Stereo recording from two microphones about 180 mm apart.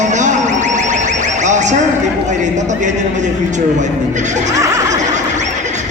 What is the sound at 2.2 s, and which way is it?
A man's voice, 40° right (ahead or behind).